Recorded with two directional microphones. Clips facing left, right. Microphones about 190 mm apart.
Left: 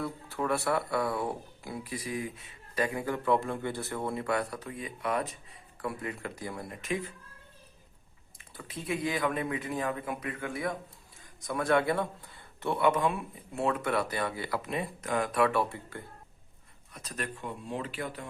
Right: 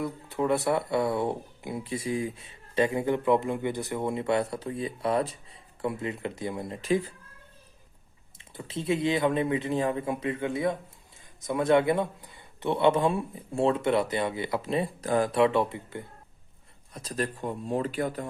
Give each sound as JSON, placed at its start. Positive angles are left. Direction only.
{"t": 0.0, "sound": "speech", "side_deg": -20}
{"t": 8.4, "sound": "speech", "side_deg": -25}
{"t": 16.9, "sound": "speech", "side_deg": -30}